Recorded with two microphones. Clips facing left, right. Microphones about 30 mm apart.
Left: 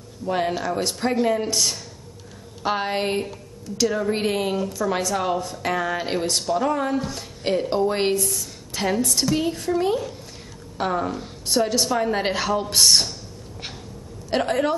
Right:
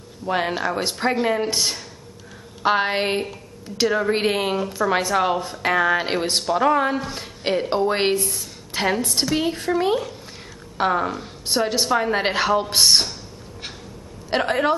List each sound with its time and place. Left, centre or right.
0.2 s a woman's voice: right
14.3 s a woman's voice: right